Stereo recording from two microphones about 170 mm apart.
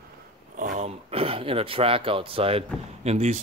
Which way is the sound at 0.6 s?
45° right (ahead or behind).